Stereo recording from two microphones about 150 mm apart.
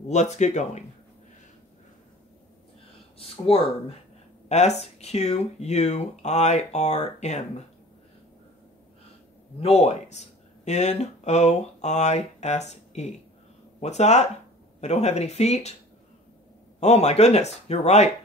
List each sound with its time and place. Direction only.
0.1 s speech: 50° left (ahead or behind)
3.2 s speech: 40° left (ahead or behind)
9.6 s speech: 45° left (ahead or behind)
16.8 s speech: 45° left (ahead or behind)